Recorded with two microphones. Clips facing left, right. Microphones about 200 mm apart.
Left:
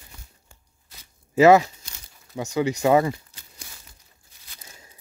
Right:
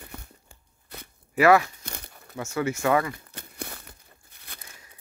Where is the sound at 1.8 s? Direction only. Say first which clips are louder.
Right 9 dB; 60° right (ahead or behind).